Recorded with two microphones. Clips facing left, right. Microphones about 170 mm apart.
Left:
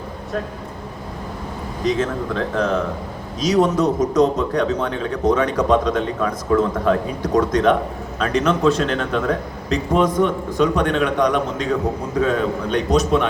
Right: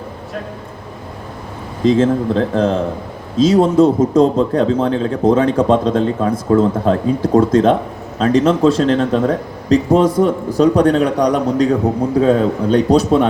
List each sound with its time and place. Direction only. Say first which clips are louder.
1.8 s a man's voice: right 8 dB; 30° right (ahead or behind)